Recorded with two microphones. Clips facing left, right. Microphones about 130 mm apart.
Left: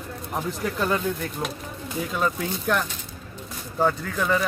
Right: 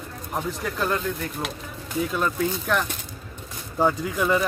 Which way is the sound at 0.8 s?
Centre (ahead or behind).